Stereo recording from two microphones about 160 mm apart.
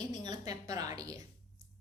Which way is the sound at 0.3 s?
25° right (ahead or behind).